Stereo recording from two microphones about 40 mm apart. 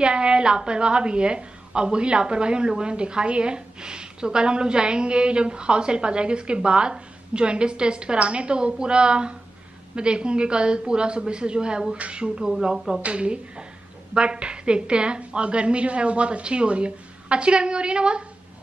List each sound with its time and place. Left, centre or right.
0.0 s a woman's voice: right
12.6 s speech: centre
13.0 s a woman's voice: right